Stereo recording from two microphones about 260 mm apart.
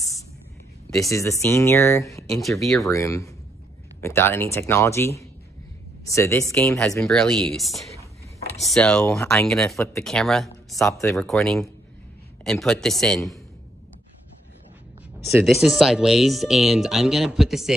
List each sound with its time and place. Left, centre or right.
1.0 s speech: centre
2.6 s speech: centre
2.9 s speech: centre
10.9 s speech: centre
15.2 s speech: centre